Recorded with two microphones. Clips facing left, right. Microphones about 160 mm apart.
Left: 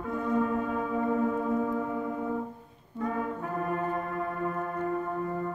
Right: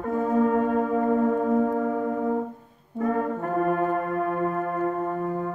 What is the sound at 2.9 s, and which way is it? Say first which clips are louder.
Brass instrument: right 6 dB; 60° right (ahead or behind).